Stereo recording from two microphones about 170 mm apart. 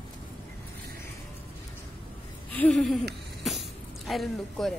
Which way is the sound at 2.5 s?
5° left (ahead or behind).